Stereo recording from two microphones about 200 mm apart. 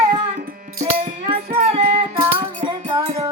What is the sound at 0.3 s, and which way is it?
Music, 45° right (ahead or behind).